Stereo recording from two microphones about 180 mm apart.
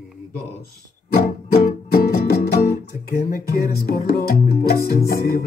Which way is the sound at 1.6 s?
50° left (ahead or behind).